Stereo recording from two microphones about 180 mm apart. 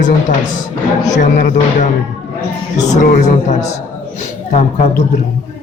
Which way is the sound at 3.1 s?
40° left (ahead or behind).